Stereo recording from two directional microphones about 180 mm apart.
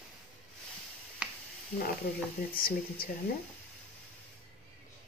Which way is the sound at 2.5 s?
55° left (ahead or behind).